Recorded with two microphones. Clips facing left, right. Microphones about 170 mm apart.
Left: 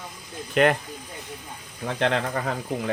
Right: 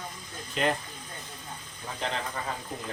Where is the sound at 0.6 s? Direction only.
65° left (ahead or behind).